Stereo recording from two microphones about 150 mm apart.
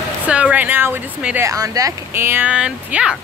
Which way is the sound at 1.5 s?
25° right (ahead or behind).